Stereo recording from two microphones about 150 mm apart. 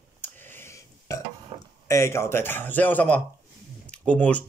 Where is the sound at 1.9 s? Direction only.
20° left (ahead or behind).